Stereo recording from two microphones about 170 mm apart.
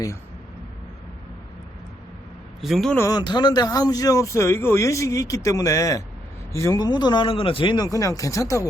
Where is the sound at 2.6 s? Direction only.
Centre (ahead or behind).